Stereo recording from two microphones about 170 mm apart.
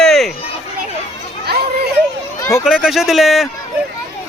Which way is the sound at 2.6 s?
Centre (ahead or behind).